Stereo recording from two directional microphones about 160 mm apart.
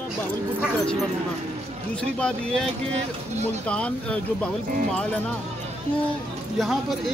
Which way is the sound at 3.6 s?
5° left (ahead or behind).